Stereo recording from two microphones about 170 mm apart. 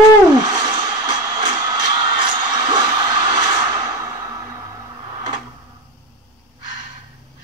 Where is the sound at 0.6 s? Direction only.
25° right (ahead or behind).